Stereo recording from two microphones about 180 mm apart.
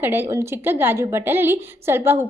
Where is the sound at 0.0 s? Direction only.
10° right (ahead or behind).